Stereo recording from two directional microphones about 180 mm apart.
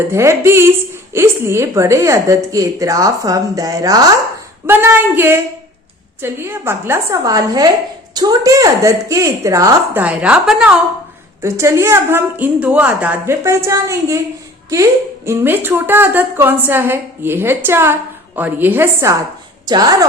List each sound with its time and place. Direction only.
0.1 s a woman's voice: 15° right (ahead or behind)
11.4 s a woman's voice: 15° right (ahead or behind)
15.3 s a woman's voice: 10° right (ahead or behind)